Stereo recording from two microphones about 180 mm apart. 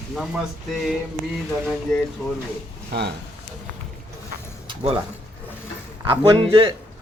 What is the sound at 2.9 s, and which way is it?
Speech, 65° right (ahead or behind).